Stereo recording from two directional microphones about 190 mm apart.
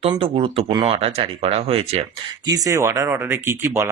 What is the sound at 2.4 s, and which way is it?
Speech, 20° right (ahead or behind).